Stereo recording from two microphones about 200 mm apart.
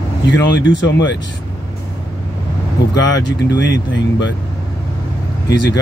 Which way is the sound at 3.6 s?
65° left (ahead or behind).